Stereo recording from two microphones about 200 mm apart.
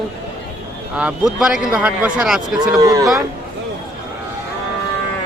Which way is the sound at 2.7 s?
20° right (ahead or behind).